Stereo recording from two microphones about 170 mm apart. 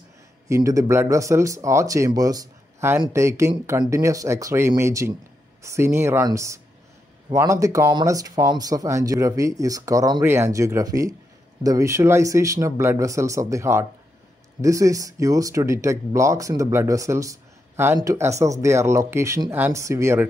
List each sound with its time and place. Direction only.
0.5 s speech: 20° right (ahead or behind)